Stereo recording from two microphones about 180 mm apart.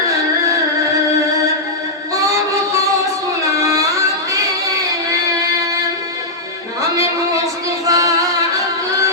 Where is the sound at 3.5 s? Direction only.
15° right (ahead or behind).